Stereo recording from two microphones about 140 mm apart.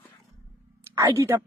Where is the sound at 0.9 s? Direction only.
20° right (ahead or behind).